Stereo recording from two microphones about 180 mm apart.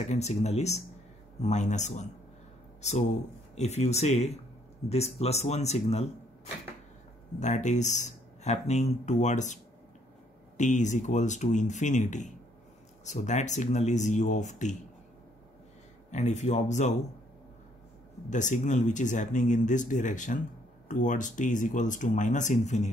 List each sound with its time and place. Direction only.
0.1 s speech: 40° left (ahead or behind)
7.3 s speech: 40° left (ahead or behind)
10.6 s speech: 40° left (ahead or behind)
16.1 s speech: 40° left (ahead or behind)
18.3 s speech: 45° left (ahead or behind)